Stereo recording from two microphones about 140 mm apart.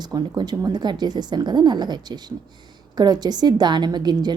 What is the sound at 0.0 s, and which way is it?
A woman's voice, 30° right (ahead or behind).